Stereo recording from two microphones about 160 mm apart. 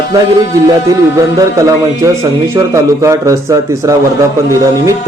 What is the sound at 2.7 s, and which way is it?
A man's voice, 20° right (ahead or behind).